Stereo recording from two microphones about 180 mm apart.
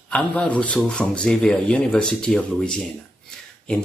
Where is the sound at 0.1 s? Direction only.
5° left (ahead or behind).